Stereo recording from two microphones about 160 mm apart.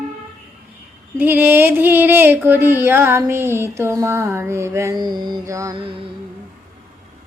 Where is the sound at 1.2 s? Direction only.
10° right (ahead or behind).